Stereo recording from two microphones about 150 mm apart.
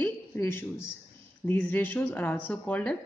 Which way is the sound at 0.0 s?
15° left (ahead or behind).